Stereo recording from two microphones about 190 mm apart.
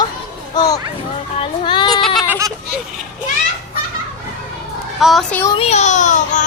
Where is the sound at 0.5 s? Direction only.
20° left (ahead or behind).